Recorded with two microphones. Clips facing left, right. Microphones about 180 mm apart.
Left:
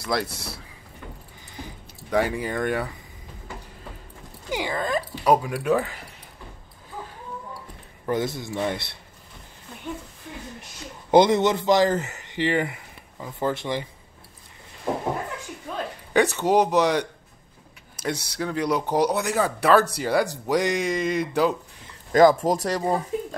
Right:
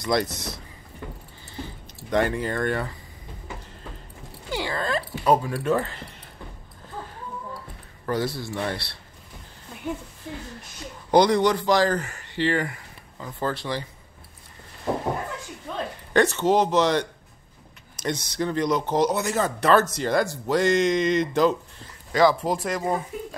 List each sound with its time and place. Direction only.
0.0 s speech: 5° left (ahead or behind)
2.0 s speech: 5° left (ahead or behind)
4.5 s speech: 15° left (ahead or behind)
8.0 s a sound: 20° left (ahead or behind)
8.4 s speech: 20° left (ahead or behind)
11.1 s speech: 20° left (ahead or behind)
16.1 s speech: 10° left (ahead or behind)
18.0 s speech: 5° left (ahead or behind)
22.1 s speech: 45° left (ahead or behind)